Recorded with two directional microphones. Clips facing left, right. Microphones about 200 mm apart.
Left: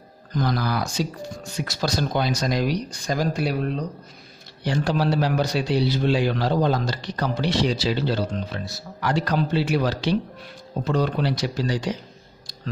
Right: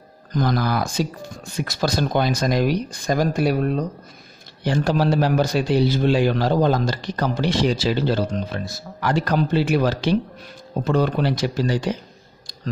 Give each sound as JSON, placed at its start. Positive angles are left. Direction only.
{"t": 0.4, "sound": "a man's voice", "side_deg": -50}